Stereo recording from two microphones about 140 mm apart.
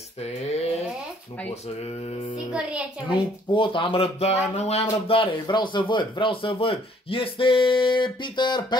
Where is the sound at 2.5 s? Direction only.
5° right (ahead or behind).